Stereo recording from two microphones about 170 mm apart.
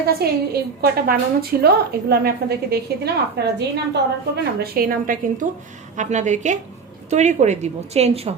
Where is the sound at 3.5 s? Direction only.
80° right.